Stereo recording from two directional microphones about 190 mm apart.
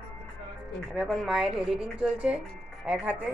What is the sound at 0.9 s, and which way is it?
Speech, centre (ahead or behind).